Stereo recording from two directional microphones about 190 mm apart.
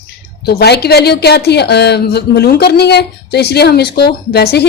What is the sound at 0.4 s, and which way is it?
Speech, 60° left (ahead or behind).